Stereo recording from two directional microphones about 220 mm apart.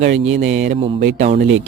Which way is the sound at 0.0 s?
35° right (ahead or behind).